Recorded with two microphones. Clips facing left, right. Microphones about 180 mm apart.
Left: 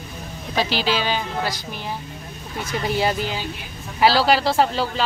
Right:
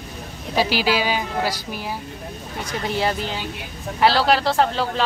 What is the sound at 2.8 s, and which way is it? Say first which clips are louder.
Speech: left 1 dB; centre (ahead or behind).